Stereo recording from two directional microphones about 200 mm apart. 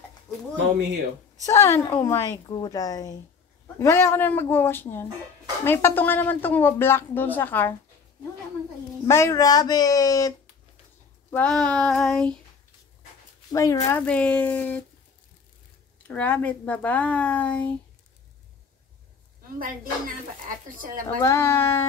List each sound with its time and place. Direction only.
1.4 s speech: 15° left (ahead or behind)
9.0 s speech: 15° left (ahead or behind)
11.2 s female singing: 5° left (ahead or behind)
13.5 s speech: 15° left (ahead or behind)
16.1 s speech: 10° left (ahead or behind)
19.6 s speech: 45° right (ahead or behind)
21.2 s speech: 15° left (ahead or behind)